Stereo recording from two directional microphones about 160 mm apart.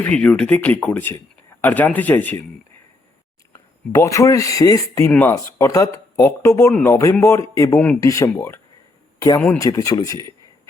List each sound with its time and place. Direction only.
0.0 s speech: 5° left (ahead or behind)
3.5 s speech: 20° left (ahead or behind)
5.0 s speech: 10° left (ahead or behind)